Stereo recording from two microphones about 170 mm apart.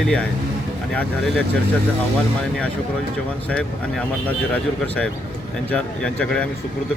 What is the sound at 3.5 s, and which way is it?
A man's voice, 5° left (ahead or behind).